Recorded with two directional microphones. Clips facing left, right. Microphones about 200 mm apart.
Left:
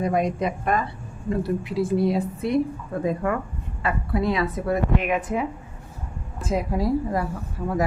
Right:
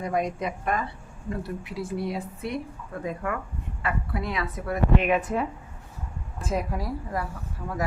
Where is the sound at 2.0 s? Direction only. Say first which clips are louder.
Left 8 dB; 30° left (ahead or behind).